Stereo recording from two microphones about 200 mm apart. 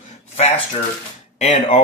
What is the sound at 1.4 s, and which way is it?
Speech, 30° left (ahead or behind).